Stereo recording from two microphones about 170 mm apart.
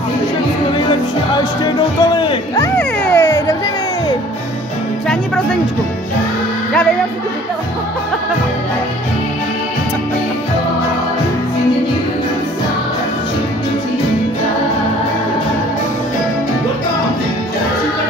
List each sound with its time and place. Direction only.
1.6 s speech: 30° left (ahead or behind)
2.8 s music: 10° left (ahead or behind)
5.0 s music: 5° left (ahead or behind)